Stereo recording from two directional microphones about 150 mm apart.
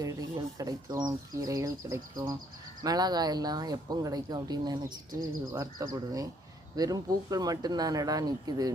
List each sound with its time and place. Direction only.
0.0 s speech: 25° right (ahead or behind)